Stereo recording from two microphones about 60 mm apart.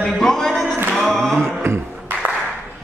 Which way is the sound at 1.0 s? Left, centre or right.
Centre.